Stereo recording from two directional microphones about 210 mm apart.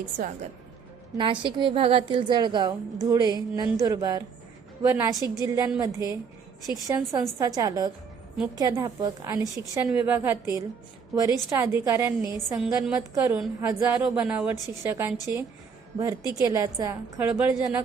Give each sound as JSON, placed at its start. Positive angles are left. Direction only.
{"t": 1.2, "sound": "a woman's voice", "side_deg": -25}
{"t": 12.6, "sound": "a woman's voice", "side_deg": 0}
{"t": 13.1, "sound": "a woman's voice", "side_deg": -15}